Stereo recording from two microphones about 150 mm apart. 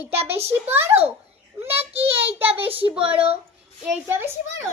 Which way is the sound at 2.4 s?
40° right (ahead or behind).